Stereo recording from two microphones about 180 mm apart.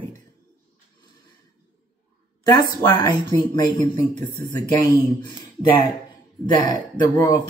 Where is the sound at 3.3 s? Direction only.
20° left (ahead or behind).